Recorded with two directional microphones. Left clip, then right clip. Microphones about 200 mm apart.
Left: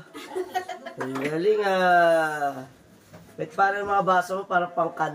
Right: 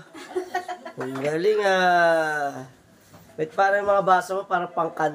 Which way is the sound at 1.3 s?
50° right (ahead or behind).